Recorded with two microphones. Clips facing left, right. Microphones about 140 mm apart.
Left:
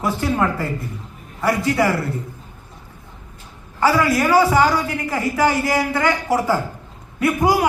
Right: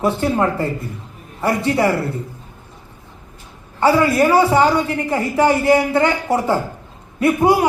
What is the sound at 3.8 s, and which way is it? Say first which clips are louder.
A woman's voice: right 3 dB; 25° right (ahead or behind).